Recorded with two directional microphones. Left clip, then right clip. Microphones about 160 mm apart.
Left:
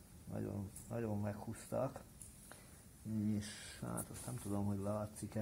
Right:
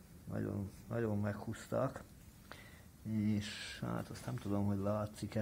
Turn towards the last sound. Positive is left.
turn(degrees=-20)  # may be behind; listen again after turning